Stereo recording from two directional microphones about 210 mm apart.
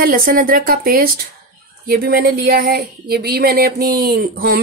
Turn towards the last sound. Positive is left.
turn(degrees=-45)  # may be behind; listen again after turning